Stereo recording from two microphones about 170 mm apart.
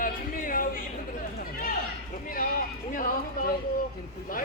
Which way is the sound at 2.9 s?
50° left (ahead or behind).